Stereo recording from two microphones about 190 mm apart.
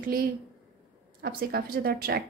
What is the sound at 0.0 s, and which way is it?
A woman's voice, 50° right (ahead or behind).